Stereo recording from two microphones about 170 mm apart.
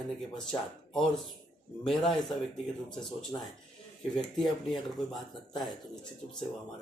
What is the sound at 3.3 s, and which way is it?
Speech, 20° left (ahead or behind).